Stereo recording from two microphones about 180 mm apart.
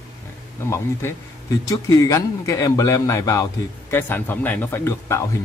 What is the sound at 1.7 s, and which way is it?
Speech, 20° left (ahead or behind).